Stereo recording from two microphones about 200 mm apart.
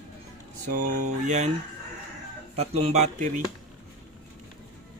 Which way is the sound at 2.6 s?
30° right (ahead or behind).